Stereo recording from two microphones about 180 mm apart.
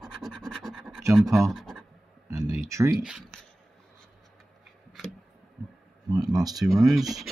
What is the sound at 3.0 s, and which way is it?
Speech, 5° right (ahead or behind).